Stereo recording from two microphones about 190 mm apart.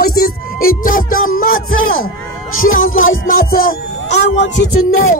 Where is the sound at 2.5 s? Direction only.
90° left.